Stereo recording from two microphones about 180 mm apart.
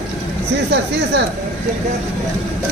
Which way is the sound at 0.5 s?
70° right (ahead or behind).